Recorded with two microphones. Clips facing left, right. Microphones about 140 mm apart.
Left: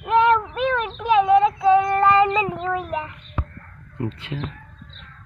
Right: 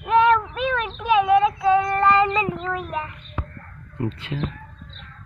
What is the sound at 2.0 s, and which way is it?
Speech, 20° left (ahead or behind).